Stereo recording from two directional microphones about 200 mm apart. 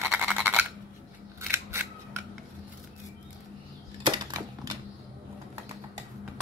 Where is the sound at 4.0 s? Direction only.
20° right (ahead or behind).